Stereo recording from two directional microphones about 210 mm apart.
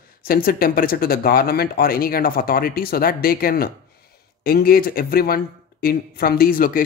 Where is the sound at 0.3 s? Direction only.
45° left (ahead or behind).